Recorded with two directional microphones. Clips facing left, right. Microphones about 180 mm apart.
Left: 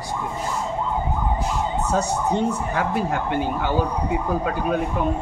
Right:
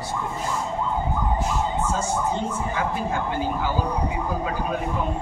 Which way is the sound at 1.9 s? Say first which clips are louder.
Left 3 dB; 70° left (ahead or behind).